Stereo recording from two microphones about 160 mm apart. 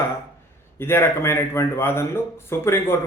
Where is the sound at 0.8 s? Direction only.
15° left (ahead or behind).